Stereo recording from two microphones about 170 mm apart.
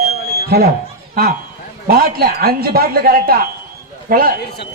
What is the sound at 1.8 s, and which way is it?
A woman's voice, 60° right (ahead or behind).